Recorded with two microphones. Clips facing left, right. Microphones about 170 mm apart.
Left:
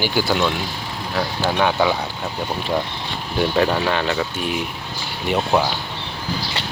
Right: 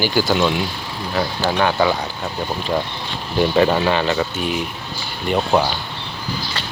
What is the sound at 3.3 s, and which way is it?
Speech, centre (ahead or behind).